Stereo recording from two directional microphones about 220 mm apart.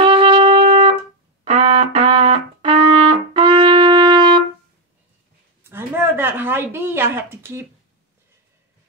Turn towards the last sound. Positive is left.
turn(degrees=-10)  # may be behind; listen again after turning